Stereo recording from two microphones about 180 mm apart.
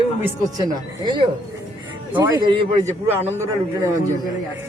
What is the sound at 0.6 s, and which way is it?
Speech, 25° right (ahead or behind).